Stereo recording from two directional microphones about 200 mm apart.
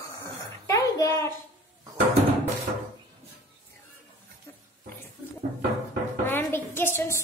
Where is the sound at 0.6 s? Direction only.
15° left (ahead or behind).